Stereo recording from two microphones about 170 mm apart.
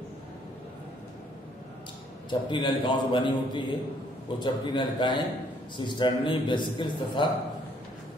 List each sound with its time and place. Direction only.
2.2 s a man's voice: 25° left (ahead or behind)